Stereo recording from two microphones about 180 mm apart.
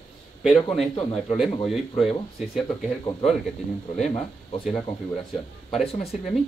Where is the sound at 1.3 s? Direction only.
Centre (ahead or behind).